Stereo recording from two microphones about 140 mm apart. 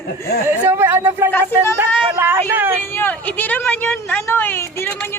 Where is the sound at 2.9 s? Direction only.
15° left (ahead or behind).